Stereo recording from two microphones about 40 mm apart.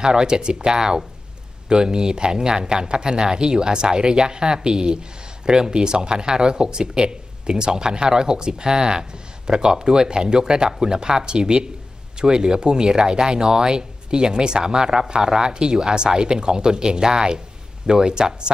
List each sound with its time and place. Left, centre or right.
0.0 s speech: centre